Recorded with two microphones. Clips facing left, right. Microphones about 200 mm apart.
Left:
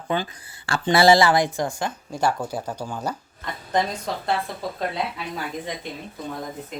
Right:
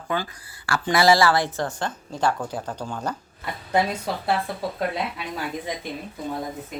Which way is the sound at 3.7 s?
10° right (ahead or behind).